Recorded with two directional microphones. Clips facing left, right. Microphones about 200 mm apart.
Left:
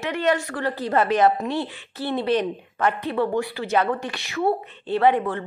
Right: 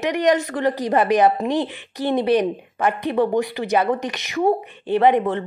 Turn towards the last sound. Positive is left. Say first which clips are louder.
# right 3 dB
turn(degrees=-20)  # may be behind; listen again after turning